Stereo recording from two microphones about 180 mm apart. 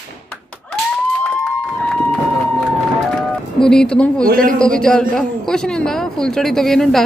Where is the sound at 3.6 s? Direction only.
5° left (ahead or behind).